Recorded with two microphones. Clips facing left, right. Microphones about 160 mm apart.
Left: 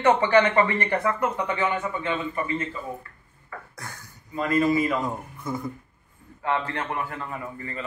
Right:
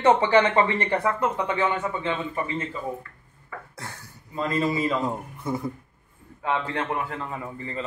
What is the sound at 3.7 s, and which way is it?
A man's voice, 30° right (ahead or behind).